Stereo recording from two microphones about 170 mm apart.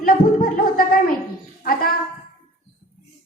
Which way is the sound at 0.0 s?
55° left (ahead or behind).